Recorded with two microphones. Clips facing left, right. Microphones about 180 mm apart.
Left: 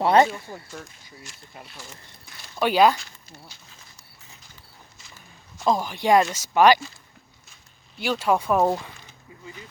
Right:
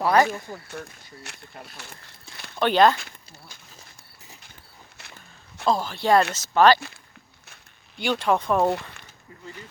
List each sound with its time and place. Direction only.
0.0 s speech: 25° left (ahead or behind)
0.7 s speech: 65° right (ahead or behind)
2.6 s speech: 10° left (ahead or behind)
5.6 s speech: 15° left (ahead or behind)
7.9 s speech: 5° left (ahead or behind)